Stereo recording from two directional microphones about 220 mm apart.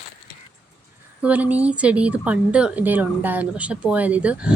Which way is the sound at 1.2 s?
5° right (ahead or behind).